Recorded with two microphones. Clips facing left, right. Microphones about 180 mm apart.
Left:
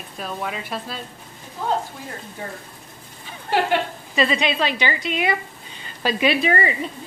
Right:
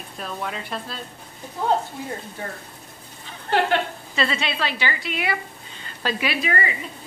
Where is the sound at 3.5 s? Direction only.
10° left (ahead or behind); by 6.7 s 30° left (ahead or behind).